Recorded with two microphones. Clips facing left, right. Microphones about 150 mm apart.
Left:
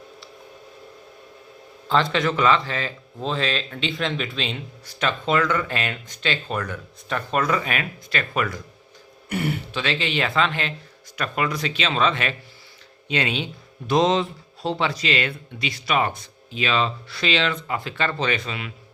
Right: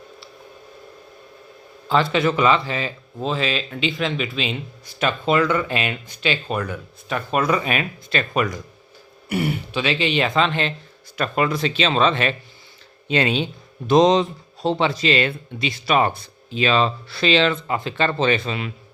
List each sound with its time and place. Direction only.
2.1 s speech: 10° right (ahead or behind); by 18.7 s 30° right (ahead or behind)